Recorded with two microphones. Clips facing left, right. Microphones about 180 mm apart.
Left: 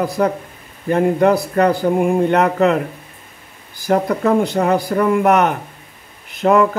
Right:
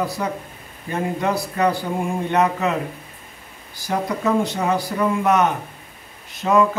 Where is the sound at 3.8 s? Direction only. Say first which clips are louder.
Left 6 dB; 60° left (ahead or behind).